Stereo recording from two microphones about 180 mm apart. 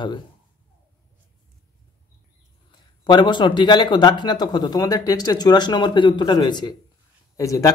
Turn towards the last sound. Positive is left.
turn(degrees=20)  # may be behind; listen again after turning